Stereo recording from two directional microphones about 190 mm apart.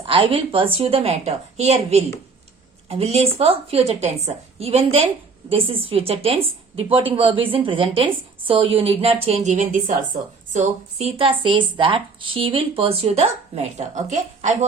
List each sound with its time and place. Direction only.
0.0 s a woman's voice: 30° right (ahead or behind)